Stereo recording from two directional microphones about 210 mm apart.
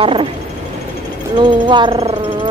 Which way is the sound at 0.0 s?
25° right (ahead or behind).